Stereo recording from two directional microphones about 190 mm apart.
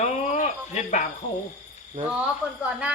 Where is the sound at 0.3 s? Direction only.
40° left (ahead or behind).